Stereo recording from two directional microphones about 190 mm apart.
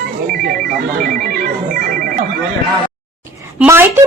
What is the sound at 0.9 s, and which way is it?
Speech, 45° right (ahead or behind).